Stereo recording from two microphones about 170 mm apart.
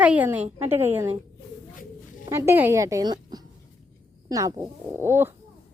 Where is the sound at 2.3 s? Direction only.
15° right (ahead or behind).